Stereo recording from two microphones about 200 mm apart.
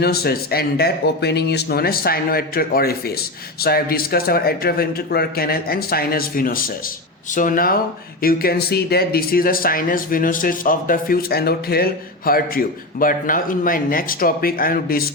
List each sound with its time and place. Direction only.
0.0 s speech: 50° left (ahead or behind)